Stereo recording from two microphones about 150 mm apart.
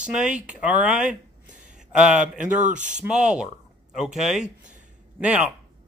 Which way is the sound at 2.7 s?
55° right (ahead or behind).